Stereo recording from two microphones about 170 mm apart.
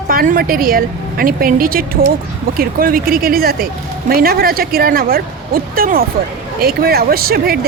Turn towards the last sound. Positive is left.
turn(degrees=-65)  # may be behind; listen again after turning